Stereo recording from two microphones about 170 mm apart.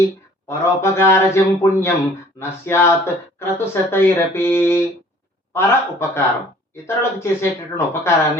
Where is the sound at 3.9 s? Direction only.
15° left (ahead or behind).